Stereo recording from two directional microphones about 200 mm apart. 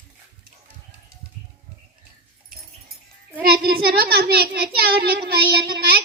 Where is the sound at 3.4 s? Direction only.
50° right (ahead or behind).